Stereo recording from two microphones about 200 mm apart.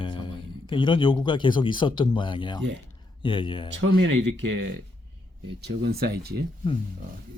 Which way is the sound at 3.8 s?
75° right (ahead or behind).